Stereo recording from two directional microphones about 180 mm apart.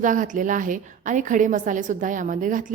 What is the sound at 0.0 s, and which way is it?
A woman's voice, 45° right (ahead or behind).